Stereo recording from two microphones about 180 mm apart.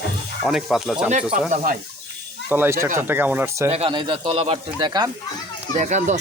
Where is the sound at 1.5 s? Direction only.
50° right (ahead or behind).